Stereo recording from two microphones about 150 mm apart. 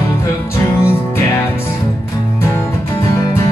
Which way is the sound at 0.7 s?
15° left (ahead or behind).